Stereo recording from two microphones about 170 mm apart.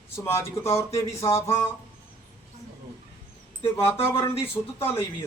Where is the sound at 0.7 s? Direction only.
15° left (ahead or behind).